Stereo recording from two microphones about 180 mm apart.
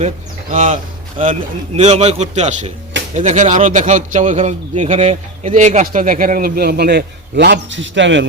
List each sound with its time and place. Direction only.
0.5 s a man's voice: 45° right (ahead or behind); by 8.3 s 90° right